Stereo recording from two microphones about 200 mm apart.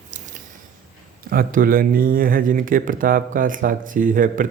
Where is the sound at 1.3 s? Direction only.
45° right (ahead or behind).